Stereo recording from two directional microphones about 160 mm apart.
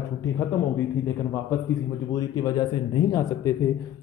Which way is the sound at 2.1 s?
20° left (ahead or behind).